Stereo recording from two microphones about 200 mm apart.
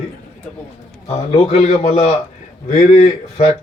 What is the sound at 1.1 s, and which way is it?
A man's voice, 30° left (ahead or behind).